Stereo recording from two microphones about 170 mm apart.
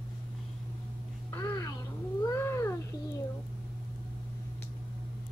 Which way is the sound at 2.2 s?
15° left (ahead or behind).